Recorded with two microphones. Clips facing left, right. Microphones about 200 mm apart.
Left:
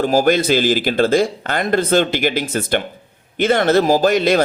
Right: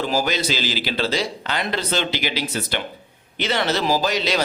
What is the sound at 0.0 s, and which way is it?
Speech, 50° left (ahead or behind).